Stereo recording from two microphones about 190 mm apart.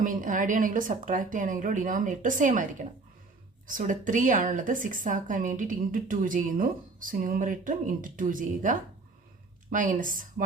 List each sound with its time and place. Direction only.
0.0 s a woman's voice: 45° right (ahead or behind)
3.7 s a woman's voice: 45° right (ahead or behind)